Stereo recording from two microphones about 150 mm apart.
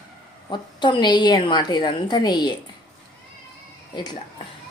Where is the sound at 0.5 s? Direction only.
30° left (ahead or behind).